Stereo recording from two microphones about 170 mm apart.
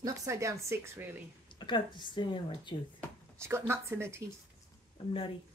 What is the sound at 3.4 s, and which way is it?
Speech, 15° right (ahead or behind).